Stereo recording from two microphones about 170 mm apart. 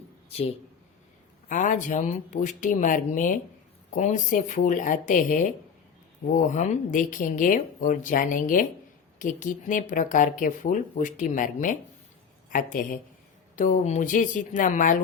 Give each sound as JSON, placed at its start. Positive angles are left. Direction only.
{"t": 0.3, "sound": "speech", "side_deg": 35}
{"t": 1.5, "sound": "speech", "side_deg": 50}